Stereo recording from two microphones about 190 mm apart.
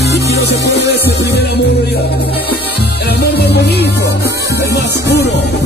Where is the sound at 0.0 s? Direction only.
60° left (ahead or behind).